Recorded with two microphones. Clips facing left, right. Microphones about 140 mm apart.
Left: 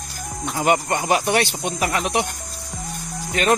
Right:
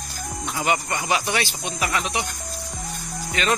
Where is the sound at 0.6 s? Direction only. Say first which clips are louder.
Left 5 dB; 50° left (ahead or behind).